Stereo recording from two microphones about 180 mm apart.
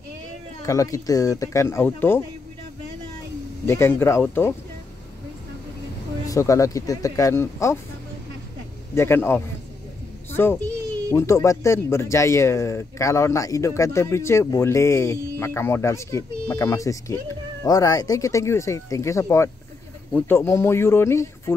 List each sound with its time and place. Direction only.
0.6 s speech: 20° left (ahead or behind)
3.6 s speech: 15° left (ahead or behind)
6.2 s speech: 20° left (ahead or behind)
8.9 s a child's voice: 15° left (ahead or behind)